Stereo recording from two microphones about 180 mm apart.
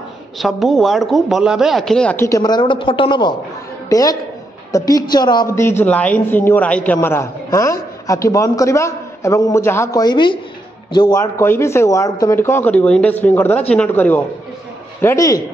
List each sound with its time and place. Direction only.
0.4 s speech: centre (ahead or behind)
2.2 s a woman's voice: 20° left (ahead or behind)